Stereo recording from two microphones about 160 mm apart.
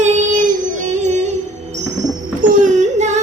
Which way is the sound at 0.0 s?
50° right (ahead or behind).